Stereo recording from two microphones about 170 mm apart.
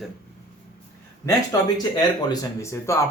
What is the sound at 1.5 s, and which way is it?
Speech, 20° left (ahead or behind).